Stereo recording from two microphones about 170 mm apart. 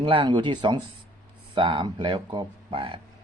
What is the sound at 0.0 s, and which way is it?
Speech, 30° right (ahead or behind).